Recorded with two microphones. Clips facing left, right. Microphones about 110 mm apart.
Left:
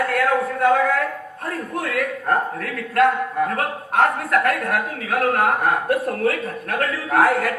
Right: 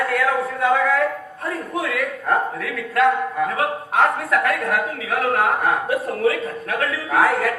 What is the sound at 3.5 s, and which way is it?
A man's voice, 50° left (ahead or behind).